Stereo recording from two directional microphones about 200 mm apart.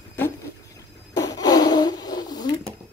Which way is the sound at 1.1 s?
20° left (ahead or behind).